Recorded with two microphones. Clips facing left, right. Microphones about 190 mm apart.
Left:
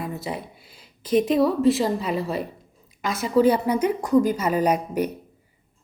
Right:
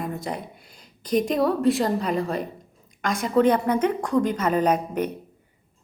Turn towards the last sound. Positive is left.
turn(degrees=10)  # may be behind; listen again after turning